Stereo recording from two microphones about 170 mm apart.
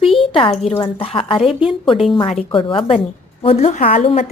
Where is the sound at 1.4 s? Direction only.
5° right (ahead or behind).